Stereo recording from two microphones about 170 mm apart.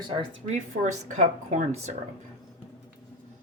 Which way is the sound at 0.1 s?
45° right (ahead or behind).